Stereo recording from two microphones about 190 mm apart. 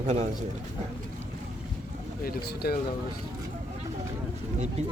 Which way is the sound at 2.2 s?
55° left (ahead or behind).